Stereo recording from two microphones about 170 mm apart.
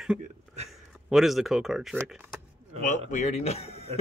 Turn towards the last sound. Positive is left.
turn(degrees=35)  # may be behind; listen again after turning